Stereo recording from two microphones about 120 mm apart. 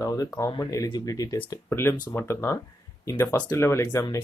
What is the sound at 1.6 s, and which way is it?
Speech, 20° left (ahead or behind).